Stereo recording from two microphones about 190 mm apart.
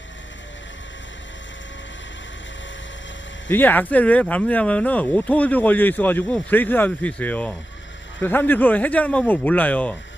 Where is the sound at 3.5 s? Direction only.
10° left (ahead or behind).